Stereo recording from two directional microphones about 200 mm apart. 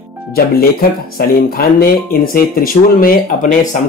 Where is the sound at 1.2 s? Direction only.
50° left (ahead or behind).